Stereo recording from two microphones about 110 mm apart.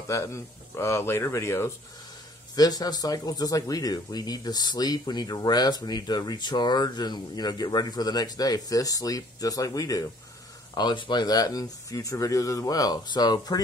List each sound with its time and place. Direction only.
0.1 s speech: 25° left (ahead or behind)
2.5 s speech: 35° left (ahead or behind)
10.7 s speech: 40° left (ahead or behind)